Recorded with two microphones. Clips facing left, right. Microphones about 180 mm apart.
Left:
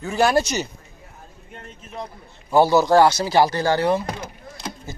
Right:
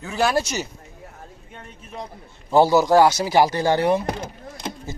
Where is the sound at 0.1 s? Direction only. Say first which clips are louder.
Left 3 dB; centre (ahead or behind).